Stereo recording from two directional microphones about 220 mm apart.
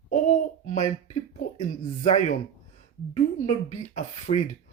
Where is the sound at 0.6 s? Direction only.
30° left (ahead or behind).